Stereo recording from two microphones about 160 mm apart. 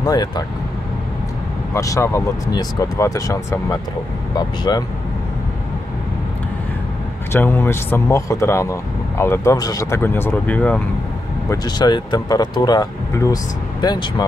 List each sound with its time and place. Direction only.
0.0 s speech: 25° left (ahead or behind)
1.7 s speech: 20° left (ahead or behind)
7.3 s speech: 15° left (ahead or behind)
11.5 s speech: 25° left (ahead or behind)